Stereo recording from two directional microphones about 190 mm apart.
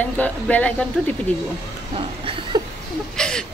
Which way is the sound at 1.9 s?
30° right (ahead or behind).